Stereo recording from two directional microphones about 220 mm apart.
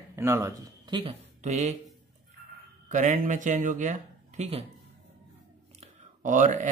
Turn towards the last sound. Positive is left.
turn(degrees=-35)  # may be behind; listen again after turning